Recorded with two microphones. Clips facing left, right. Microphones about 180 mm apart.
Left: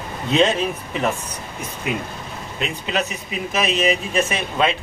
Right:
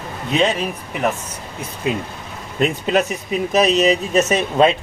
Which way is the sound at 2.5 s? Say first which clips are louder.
Right 7 dB; 45° right (ahead or behind).